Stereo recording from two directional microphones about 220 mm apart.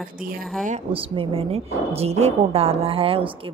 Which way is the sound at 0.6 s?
30° right (ahead or behind).